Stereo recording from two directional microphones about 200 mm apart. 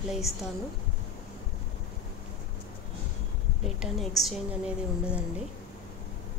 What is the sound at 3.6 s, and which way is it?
Speech, centre (ahead or behind).